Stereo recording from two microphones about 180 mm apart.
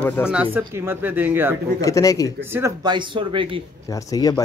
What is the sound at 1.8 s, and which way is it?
Speech, 20° left (ahead or behind).